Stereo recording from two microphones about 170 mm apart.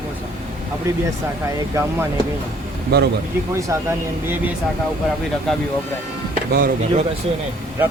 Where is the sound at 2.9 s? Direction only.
65° right (ahead or behind).